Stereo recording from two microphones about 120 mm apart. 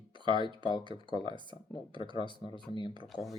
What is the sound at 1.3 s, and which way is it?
Speech, 40° left (ahead or behind).